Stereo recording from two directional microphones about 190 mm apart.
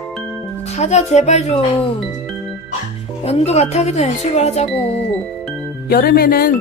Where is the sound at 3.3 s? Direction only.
35° left (ahead or behind).